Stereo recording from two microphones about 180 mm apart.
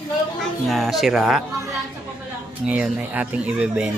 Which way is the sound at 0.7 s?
Centre (ahead or behind).